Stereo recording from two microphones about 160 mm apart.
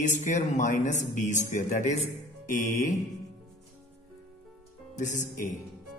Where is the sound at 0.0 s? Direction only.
50° left (ahead or behind).